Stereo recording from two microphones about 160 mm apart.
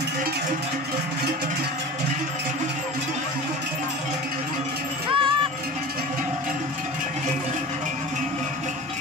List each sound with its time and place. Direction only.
5.1 s music: 30° right (ahead or behind)